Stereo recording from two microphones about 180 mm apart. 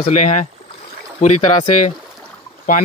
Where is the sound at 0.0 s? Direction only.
40° left (ahead or behind).